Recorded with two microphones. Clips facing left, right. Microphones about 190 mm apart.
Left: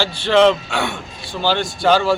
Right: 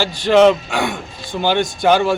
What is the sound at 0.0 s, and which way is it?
Speech, 15° right (ahead or behind).